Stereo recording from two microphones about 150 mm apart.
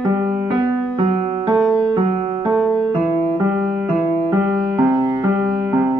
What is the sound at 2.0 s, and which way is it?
Music, 40° right (ahead or behind).